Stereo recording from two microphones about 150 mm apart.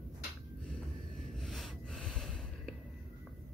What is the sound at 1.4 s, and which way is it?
Snort, centre (ahead or behind).